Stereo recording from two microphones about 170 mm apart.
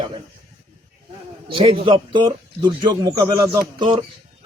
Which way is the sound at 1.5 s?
35° right (ahead or behind).